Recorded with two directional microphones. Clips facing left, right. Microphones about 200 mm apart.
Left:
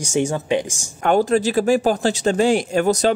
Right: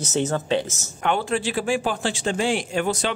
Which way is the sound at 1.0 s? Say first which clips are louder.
Left 7 dB; 40° left (ahead or behind).